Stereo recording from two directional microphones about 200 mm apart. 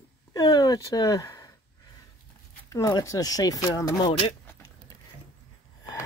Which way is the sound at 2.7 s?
20° left (ahead or behind).